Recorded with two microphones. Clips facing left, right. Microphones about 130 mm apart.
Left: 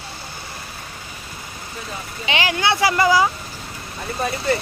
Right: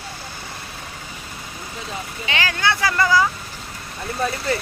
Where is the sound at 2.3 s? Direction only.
20° left (ahead or behind).